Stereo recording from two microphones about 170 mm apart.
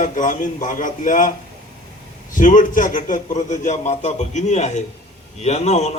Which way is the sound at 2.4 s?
50° left (ahead or behind).